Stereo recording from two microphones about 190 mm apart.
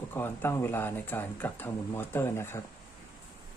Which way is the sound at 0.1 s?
10° left (ahead or behind).